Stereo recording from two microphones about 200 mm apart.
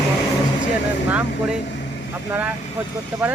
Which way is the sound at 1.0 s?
5° right (ahead or behind).